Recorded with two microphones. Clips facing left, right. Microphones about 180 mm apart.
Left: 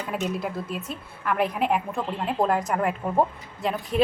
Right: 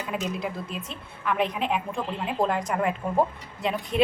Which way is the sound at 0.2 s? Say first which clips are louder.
Left 2 dB; 5° left (ahead or behind).